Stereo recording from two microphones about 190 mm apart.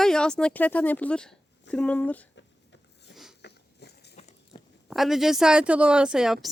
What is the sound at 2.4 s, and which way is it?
Rub, 70° left (ahead or behind).